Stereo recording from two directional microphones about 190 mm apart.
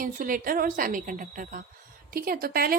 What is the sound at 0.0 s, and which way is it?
A woman's voice, 45° right (ahead or behind).